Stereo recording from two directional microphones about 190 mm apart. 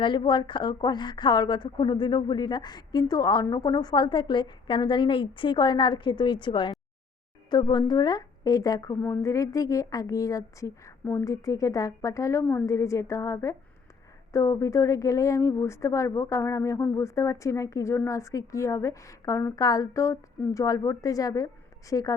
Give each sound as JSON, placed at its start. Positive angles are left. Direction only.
{"t": 0.0, "sound": "a woman's voice", "side_deg": 25}